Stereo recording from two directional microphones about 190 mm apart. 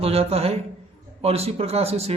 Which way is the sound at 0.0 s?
30° right (ahead or behind).